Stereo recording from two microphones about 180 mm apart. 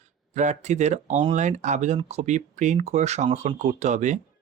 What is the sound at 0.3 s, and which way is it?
Speech, 40° right (ahead or behind).